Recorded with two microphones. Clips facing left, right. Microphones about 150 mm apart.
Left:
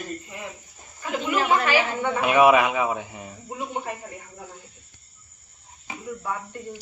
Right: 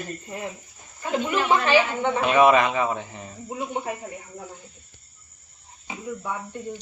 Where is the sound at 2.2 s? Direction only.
10° left (ahead or behind).